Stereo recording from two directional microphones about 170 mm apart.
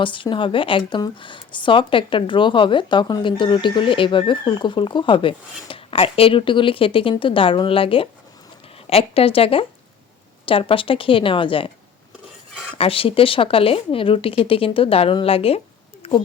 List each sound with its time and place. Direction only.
0.0 s a woman's voice: 30° left (ahead or behind)
12.7 s a woman's voice: 30° left (ahead or behind)